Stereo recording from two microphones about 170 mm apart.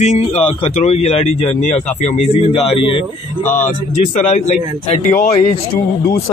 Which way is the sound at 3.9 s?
40° left (ahead or behind).